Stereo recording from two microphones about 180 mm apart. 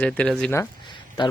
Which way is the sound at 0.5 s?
25° left (ahead or behind).